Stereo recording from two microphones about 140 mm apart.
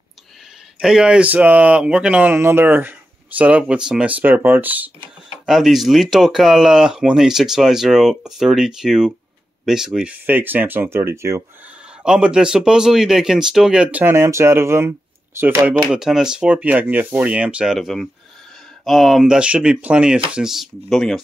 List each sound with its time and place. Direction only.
0.7 s speech: 5° right (ahead or behind)
5.5 s speech: centre (ahead or behind); by 11.4 s 20° right (ahead or behind)
12.0 s speech: 5° right (ahead or behind)
15.9 s speech: 5° right (ahead or behind)